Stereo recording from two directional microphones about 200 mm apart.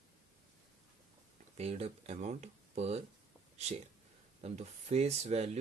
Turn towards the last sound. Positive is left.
turn(degrees=-35)  # may be behind; listen again after turning